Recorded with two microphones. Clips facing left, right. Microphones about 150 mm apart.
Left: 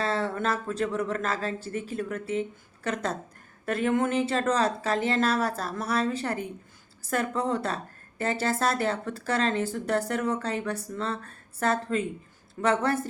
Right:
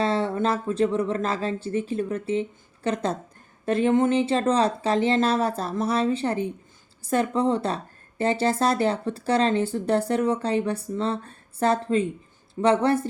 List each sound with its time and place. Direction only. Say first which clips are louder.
0.0 s speech: right 4 dB; 25° right (ahead or behind)